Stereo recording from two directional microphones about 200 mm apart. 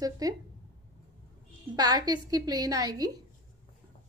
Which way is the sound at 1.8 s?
20° right (ahead or behind).